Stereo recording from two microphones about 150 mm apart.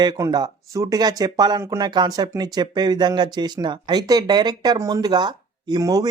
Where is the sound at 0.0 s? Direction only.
30° right (ahead or behind).